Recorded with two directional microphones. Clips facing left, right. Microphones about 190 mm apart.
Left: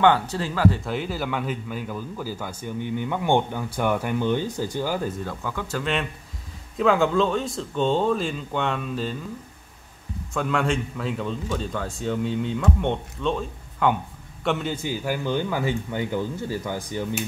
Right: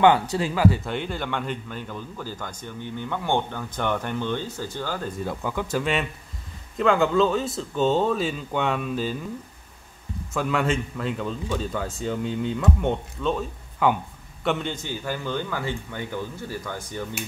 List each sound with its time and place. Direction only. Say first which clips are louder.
0.0 s a man's voice: right 1 dB; 15° right (ahead or behind); by 5.1 s 10° left (ahead or behind)
5.2 s a man's voice: right 2 dB; 15° right (ahead or behind)
10.3 s a man's voice: even; 5° right (ahead or behind); by 17.1 s 15° left (ahead or behind)